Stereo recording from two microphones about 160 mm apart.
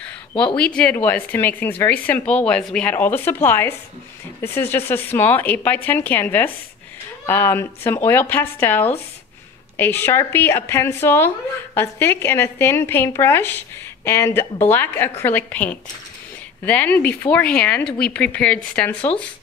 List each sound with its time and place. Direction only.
0.6 s a woman's voice: 5° left (ahead or behind)